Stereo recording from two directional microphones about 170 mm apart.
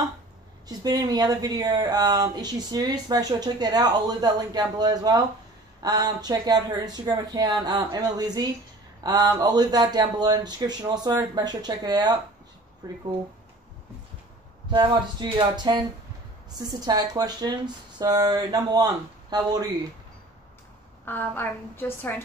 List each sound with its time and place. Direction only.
0.7 s speech: 25° right (ahead or behind)
14.7 s speech: 25° right (ahead or behind)
21.0 s a woman's voice: 10° left (ahead or behind)